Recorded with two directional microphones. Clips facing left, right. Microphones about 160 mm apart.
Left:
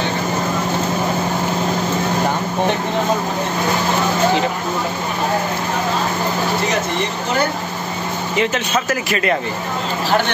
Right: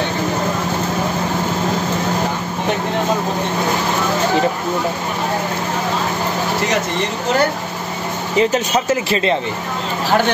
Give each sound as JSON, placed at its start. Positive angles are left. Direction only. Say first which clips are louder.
{"t": 8.4, "sound": "speech", "louder": "right 4 dB", "side_deg": -30}